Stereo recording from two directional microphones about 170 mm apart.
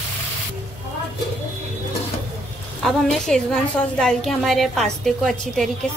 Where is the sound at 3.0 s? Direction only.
5° left (ahead or behind).